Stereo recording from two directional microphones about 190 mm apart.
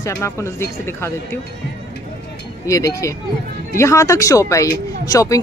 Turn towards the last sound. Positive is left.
turn(degrees=15)  # may be behind; listen again after turning